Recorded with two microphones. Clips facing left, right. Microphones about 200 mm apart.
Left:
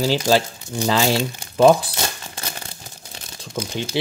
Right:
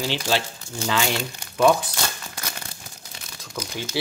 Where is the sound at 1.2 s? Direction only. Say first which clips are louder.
Left 5 dB; 25° left (ahead or behind).